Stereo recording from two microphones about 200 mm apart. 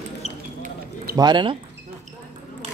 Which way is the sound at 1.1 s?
20° right (ahead or behind).